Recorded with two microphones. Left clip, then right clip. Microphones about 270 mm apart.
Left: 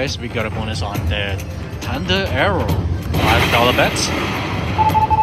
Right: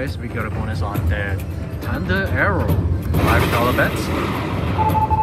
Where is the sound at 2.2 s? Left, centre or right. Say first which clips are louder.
Even; centre.